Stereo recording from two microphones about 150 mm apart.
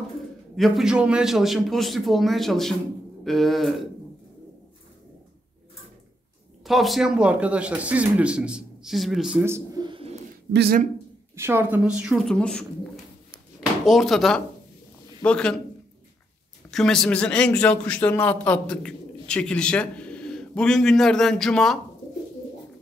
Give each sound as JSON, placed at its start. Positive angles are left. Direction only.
{"t": 0.6, "sound": "a man's voice", "side_deg": 0}
{"t": 6.6, "sound": "speech", "side_deg": 0}
{"t": 9.4, "sound": "a man's voice", "side_deg": -15}
{"t": 9.8, "sound": "a sound", "side_deg": -35}
{"t": 10.6, "sound": "speech", "side_deg": -75}
{"t": 11.3, "sound": "a woman's voice", "side_deg": -15}
{"t": 16.7, "sound": "a man's voice", "side_deg": 5}